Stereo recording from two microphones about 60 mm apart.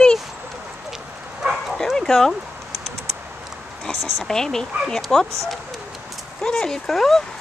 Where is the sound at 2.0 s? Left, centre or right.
Centre.